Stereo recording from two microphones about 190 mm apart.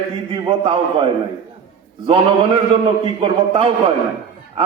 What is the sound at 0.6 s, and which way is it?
Speech, 25° right (ahead or behind).